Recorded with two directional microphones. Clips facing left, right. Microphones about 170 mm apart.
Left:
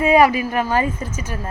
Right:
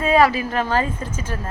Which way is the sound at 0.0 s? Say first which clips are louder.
Left 2 dB; 15° left (ahead or behind).